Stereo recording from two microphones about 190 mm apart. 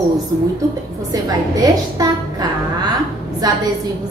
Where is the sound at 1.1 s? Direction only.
20° right (ahead or behind).